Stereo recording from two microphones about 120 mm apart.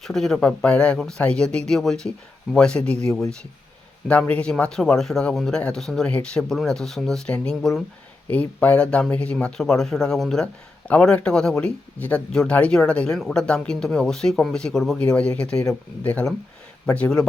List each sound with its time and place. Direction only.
0.0 s a man's voice: 5° left (ahead or behind)